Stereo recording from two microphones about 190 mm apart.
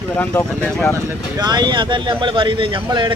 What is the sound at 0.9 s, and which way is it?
Speech, 15° right (ahead or behind).